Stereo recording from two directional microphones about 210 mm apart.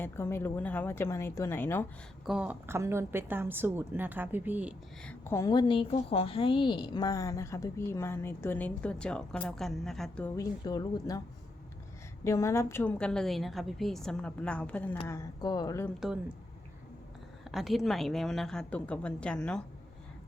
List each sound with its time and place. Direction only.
0.0 s a woman's voice: 10° left (ahead or behind)
2.2 s a woman's voice: 5° right (ahead or behind)
5.0 s a woman's voice: 10° left (ahead or behind)
10.3 s a woman's voice: 15° left (ahead or behind)
12.2 s a woman's voice: 15° left (ahead or behind)
17.5 s a woman's voice: centre (ahead or behind)